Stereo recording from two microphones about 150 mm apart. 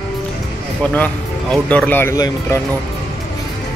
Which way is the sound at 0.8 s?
10° left (ahead or behind).